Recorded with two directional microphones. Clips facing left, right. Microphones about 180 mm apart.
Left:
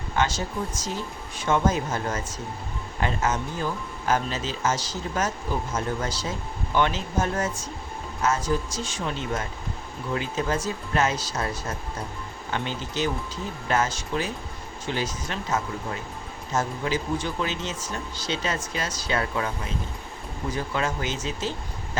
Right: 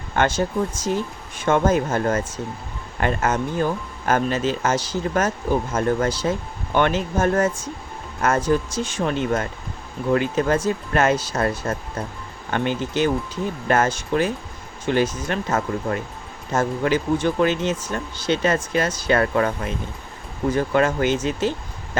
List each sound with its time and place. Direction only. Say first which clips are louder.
0.2 s speech: right 6 dB; 55° right (ahead or behind)